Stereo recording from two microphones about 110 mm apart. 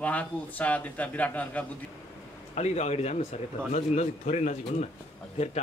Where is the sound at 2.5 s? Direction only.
80° left.